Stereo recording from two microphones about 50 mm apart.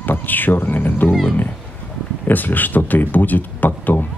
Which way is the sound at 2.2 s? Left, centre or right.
Left.